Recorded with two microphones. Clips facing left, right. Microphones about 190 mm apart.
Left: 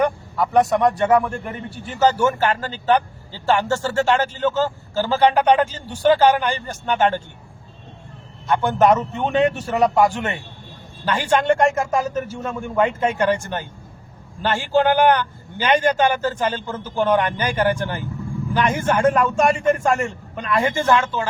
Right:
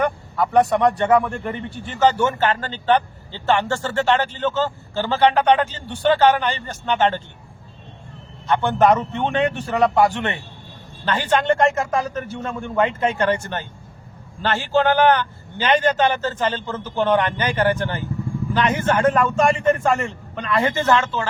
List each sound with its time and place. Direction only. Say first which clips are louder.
0.0 s speech: left 1 dB; 10° left (ahead or behind)
8.4 s a man's voice: even; 5° left (ahead or behind)